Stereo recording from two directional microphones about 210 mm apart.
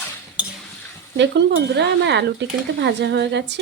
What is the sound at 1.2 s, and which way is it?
Speech, 55° right (ahead or behind).